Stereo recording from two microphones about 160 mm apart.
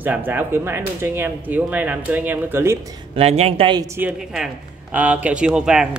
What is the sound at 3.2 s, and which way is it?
Speech, 40° right (ahead or behind).